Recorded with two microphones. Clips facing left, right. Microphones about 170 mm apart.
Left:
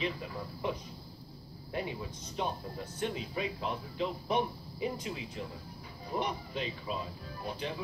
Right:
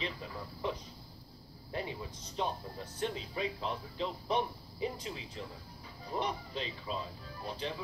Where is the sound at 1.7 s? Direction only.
30° right (ahead or behind).